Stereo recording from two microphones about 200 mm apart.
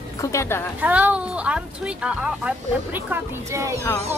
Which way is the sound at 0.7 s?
10° right (ahead or behind).